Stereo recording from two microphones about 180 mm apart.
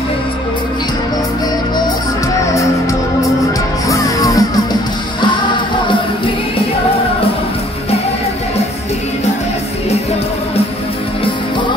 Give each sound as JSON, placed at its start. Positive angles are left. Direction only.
{"t": 2.5, "sound": "music", "side_deg": 15}